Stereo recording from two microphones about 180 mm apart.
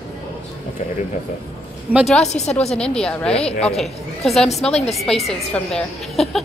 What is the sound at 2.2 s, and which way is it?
Speech, 35° left (ahead or behind).